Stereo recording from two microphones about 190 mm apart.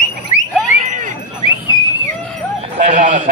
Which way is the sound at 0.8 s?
45° right (ahead or behind).